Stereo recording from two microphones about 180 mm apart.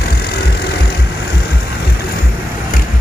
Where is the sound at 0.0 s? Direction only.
60° left (ahead or behind).